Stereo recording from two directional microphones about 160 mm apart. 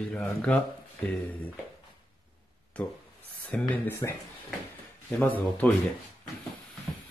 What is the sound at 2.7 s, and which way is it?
Speech, 10° left (ahead or behind).